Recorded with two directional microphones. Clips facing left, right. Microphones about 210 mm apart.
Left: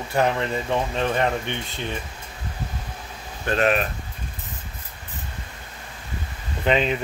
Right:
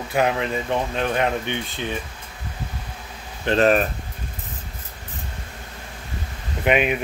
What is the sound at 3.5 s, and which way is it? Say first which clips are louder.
Speech: right 4 dB; 35° right (ahead or behind).